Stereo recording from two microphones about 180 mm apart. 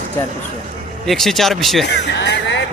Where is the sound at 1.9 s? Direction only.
70° left (ahead or behind).